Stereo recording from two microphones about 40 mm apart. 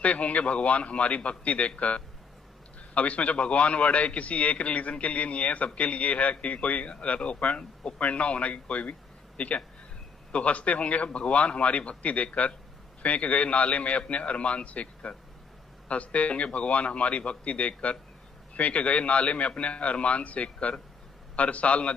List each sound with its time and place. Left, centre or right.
0.0 s a man's voice: left